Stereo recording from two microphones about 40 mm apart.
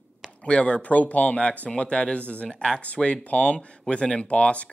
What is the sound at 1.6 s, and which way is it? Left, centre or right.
Speech, left.